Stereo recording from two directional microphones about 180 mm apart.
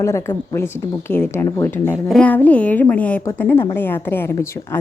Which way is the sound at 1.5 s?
20° left (ahead or behind).